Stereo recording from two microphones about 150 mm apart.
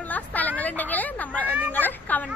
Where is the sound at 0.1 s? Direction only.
10° left (ahead or behind).